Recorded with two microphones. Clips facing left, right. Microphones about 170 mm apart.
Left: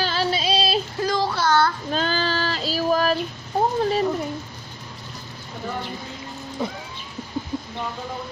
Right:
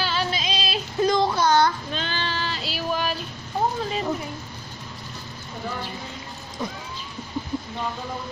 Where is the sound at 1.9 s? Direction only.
40° left (ahead or behind).